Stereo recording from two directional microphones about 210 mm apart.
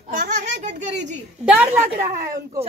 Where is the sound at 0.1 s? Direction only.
35° right (ahead or behind).